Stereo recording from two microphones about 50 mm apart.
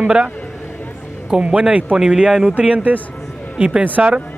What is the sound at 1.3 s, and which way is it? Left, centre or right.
Speech, right.